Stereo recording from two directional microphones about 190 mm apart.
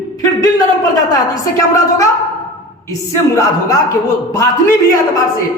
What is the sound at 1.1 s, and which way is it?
Speech, 20° left (ahead or behind).